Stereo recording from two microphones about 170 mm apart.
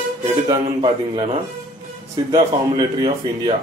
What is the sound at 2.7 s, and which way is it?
Speech, 25° right (ahead or behind).